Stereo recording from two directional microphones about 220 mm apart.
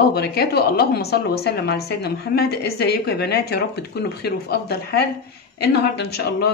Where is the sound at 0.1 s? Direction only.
45° left (ahead or behind).